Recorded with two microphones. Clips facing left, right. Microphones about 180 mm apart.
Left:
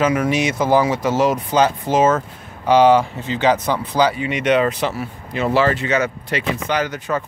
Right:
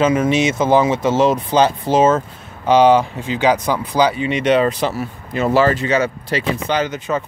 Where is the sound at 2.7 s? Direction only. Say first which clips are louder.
Right 1 dB; 20° right (ahead or behind).